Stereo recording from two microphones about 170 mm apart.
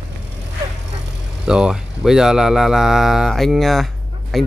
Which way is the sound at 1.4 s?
5° right (ahead or behind).